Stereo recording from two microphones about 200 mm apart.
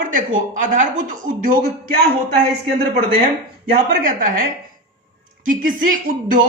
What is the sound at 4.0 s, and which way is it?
Speech, 45° right (ahead or behind).